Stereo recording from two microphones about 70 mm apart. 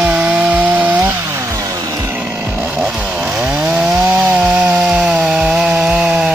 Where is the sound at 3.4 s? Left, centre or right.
Centre.